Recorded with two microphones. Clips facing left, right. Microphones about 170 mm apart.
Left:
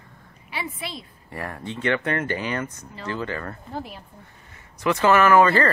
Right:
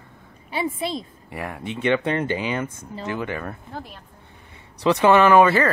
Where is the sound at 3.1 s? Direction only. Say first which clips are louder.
Right 1 dB; 15° right (ahead or behind).